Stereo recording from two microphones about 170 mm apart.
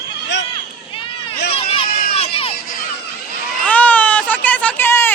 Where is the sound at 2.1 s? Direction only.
35° left (ahead or behind).